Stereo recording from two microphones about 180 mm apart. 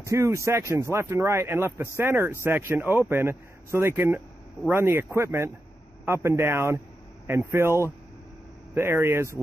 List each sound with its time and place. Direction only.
0.0 s speech: 15° right (ahead or behind)